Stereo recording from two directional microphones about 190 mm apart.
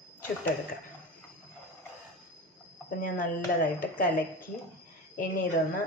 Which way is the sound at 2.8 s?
45° left (ahead or behind).